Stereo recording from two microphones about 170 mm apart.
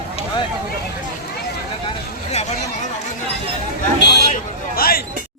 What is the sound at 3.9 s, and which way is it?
Vehicle, 80° left.